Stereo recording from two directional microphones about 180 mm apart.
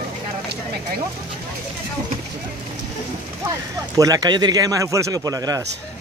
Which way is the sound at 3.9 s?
20° right (ahead or behind).